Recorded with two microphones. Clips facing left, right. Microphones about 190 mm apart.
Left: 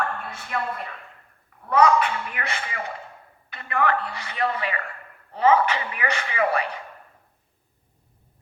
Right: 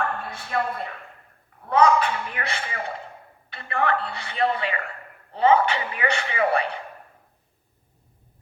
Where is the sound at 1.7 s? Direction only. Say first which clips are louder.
Even; 30° right (ahead or behind).